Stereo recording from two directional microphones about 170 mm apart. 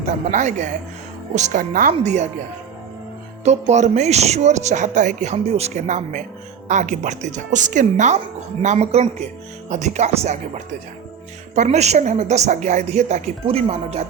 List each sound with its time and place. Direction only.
0.3 s speech: 45° right (ahead or behind)
3.4 s a woman's voice: 40° right (ahead or behind)